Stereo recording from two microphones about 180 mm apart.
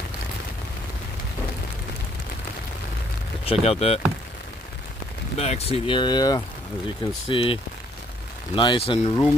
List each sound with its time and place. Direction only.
3.4 s speech: 35° left (ahead or behind)
5.4 s speech: 35° left (ahead or behind)
8.5 s speech: 30° left (ahead or behind)